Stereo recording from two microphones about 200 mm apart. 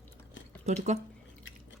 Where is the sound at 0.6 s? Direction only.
35° right (ahead or behind).